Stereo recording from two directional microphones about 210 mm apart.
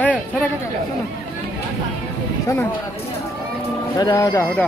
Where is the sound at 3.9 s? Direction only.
20° left (ahead or behind).